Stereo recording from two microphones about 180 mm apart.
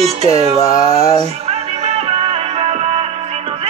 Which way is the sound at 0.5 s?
20° left (ahead or behind).